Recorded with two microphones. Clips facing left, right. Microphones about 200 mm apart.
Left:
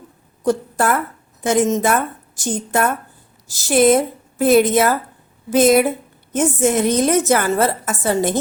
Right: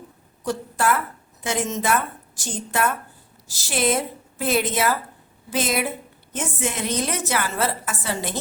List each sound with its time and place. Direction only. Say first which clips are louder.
0.4 s a woman's voice: left 5 dB; 50° left (ahead or behind)